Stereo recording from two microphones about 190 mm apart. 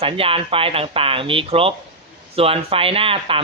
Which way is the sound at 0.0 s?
30° right (ahead or behind).